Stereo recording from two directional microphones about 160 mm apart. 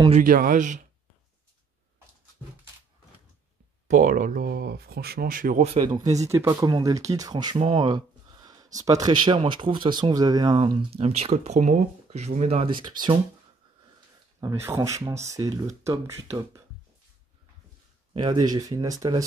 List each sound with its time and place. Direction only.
0.2 s speech: 60° right (ahead or behind)
3.8 s speech: 50° right (ahead or behind)
6.1 s speech: 15° right (ahead or behind)
7.5 s speech: 35° right (ahead or behind)
14.4 s speech: 15° right (ahead or behind)
18.1 s speech: 25° right (ahead or behind)